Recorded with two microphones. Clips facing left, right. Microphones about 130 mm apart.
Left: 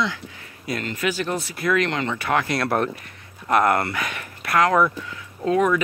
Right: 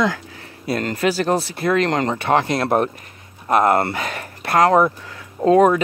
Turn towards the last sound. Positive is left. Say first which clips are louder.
# right 6 dB
turn(degrees=-35)  # may be behind; listen again after turning